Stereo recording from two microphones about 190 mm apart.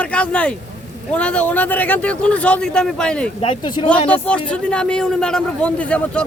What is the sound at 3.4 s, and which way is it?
Speech, 25° left (ahead or behind).